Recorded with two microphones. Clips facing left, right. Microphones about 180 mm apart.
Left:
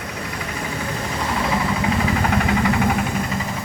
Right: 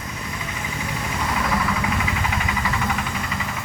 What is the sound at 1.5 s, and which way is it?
Vehicle, 30° left (ahead or behind).